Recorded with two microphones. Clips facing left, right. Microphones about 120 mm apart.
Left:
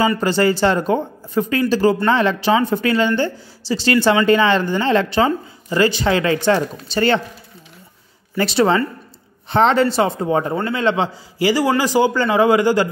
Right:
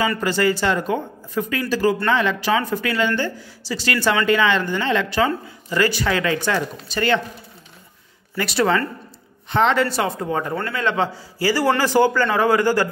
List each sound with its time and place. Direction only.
0.2 s speech: 30° left (ahead or behind)
8.4 s speech: 25° left (ahead or behind)